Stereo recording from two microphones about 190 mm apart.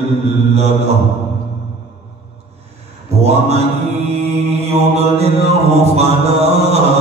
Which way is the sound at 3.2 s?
35° right (ahead or behind).